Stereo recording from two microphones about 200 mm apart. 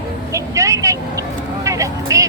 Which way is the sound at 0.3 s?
15° right (ahead or behind).